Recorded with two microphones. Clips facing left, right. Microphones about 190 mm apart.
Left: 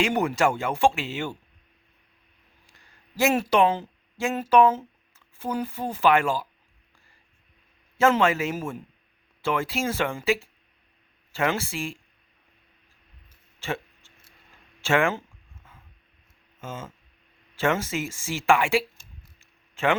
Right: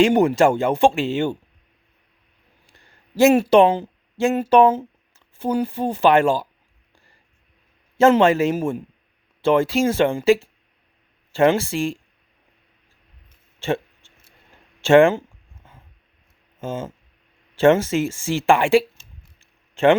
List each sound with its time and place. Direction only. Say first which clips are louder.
0.0 s speech: right 8 dB; 30° right (ahead or behind)
2.7 s a sound: right 9 dB; 30° right (ahead or behind)
4.4 s speech: right 3 dB; 30° right (ahead or behind)
8.2 s a man's voice: right 7 dB; 30° right (ahead or behind)
13.6 s a sound: right 8 dB; 25° right (ahead or behind)
14.8 s speech: right 10 dB; 30° right (ahead or behind)
16.6 s speech: right 9 dB; 30° right (ahead or behind)
18.9 s mechanisms: right 1 dB; 30° right (ahead or behind)